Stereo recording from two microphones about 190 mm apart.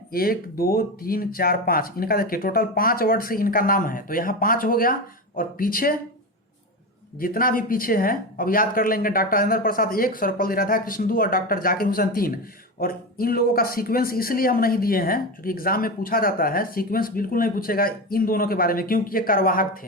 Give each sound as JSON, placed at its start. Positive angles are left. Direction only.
{"t": 0.1, "sound": "speech", "side_deg": 50}
{"t": 7.2, "sound": "speech", "side_deg": 50}